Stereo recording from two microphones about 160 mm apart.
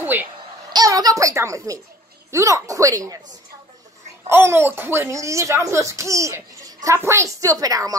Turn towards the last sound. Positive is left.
turn(degrees=-20)  # may be behind; listen again after turning